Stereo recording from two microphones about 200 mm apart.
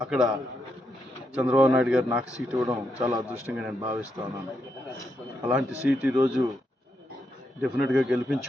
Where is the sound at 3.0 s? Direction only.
20° right (ahead or behind).